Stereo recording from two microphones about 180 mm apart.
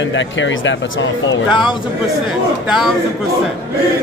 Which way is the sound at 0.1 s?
90° left.